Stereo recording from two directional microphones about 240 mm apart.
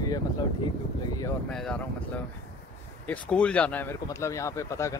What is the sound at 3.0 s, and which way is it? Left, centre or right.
Speech, centre.